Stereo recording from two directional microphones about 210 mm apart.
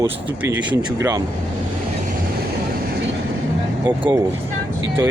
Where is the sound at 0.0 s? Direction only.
15° right (ahead or behind).